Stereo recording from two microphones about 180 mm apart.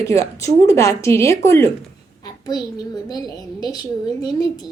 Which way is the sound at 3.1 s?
20° left (ahead or behind).